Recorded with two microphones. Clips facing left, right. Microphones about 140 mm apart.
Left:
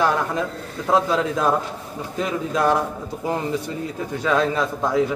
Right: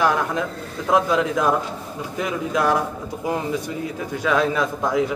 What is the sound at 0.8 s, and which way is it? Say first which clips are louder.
Speech: right 1 dB; 15° right (ahead or behind).